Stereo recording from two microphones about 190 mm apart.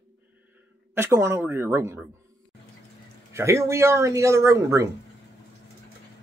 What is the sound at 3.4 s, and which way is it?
Speech, 15° right (ahead or behind).